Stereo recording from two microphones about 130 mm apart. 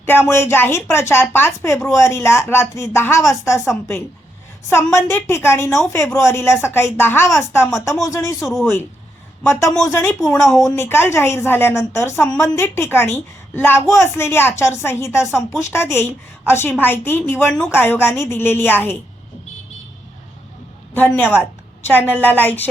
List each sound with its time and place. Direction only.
0.0 s speech: 15° left (ahead or behind)
4.7 s speech: 20° left (ahead or behind)
5.6 s speech: centre (ahead or behind)
5.9 s speech: 20° left (ahead or behind)
8.4 s speech: centre (ahead or behind)
9.4 s speech: 20° left (ahead or behind)
10.2 s speech: centre (ahead or behind)
10.7 s speech: 15° left (ahead or behind)
21.8 s speech: 15° left (ahead or behind)